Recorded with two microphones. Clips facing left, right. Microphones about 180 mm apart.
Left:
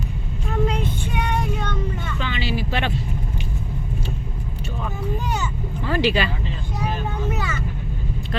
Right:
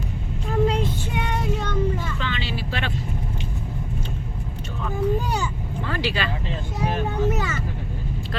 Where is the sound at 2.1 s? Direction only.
10° left (ahead or behind).